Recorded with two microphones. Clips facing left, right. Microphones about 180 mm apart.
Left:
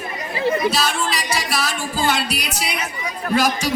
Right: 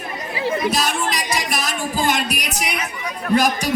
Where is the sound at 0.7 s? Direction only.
15° right (ahead or behind).